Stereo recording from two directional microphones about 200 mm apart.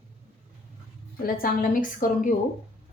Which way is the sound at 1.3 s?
45° left (ahead or behind).